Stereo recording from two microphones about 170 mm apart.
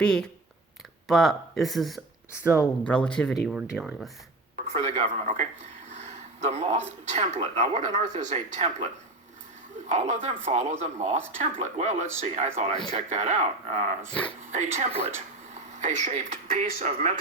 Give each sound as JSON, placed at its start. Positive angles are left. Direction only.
{"t": 0.0, "sound": "speech", "side_deg": 5}
{"t": 2.4, "sound": "speech", "side_deg": -10}
{"t": 2.8, "sound": "speech", "side_deg": 5}
{"t": 4.5, "sound": "speech", "side_deg": -40}
{"t": 9.9, "sound": "speech", "side_deg": -40}
{"t": 14.1, "sound": "speech", "side_deg": 5}
{"t": 14.5, "sound": "speech", "side_deg": -40}